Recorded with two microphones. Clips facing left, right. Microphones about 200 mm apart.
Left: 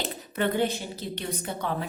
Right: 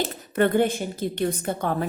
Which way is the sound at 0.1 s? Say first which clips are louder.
Right 6 dB; 50° right (ahead or behind).